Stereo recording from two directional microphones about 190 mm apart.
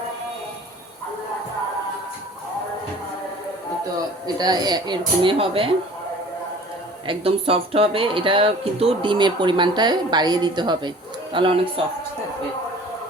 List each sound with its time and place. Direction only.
4.4 s speech: 20° right (ahead or behind)
7.1 s speech: 30° right (ahead or behind)